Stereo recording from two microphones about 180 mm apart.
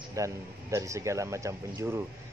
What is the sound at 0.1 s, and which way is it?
Speech, 15° right (ahead or behind).